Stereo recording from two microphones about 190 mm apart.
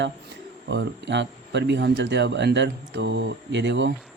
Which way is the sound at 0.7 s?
65° right (ahead or behind).